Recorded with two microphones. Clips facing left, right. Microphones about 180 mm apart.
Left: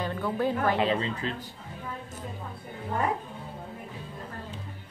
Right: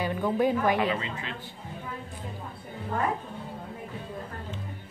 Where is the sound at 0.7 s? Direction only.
35° left (ahead or behind).